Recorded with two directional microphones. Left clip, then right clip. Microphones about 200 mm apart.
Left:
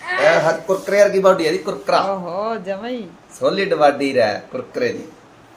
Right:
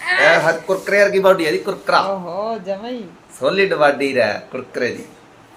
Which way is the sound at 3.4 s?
10° left (ahead or behind).